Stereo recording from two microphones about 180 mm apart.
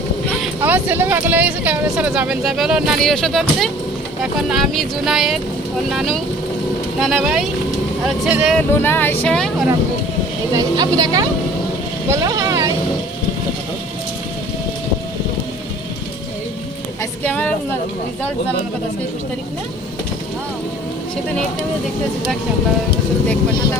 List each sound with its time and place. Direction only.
0.6 s speech: 10° right (ahead or behind)
8.5 s speech: 10° left (ahead or behind)
10.5 s a woman's voice: 20° right (ahead or behind)
12.1 s vehicle: 20° right (ahead or behind)
17.0 s a sound: 10° left (ahead or behind)